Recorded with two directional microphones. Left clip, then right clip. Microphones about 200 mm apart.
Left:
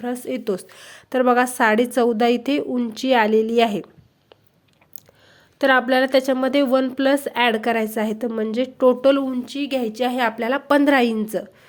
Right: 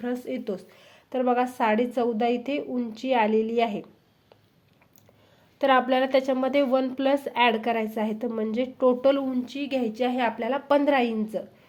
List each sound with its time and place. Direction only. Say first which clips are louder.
0.0 s a woman's voice: left 5 dB; 20° left (ahead or behind)
5.5 s a woman's voice: left 4 dB; 20° left (ahead or behind)